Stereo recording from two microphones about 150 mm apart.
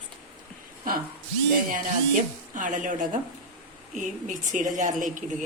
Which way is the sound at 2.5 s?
60° right (ahead or behind).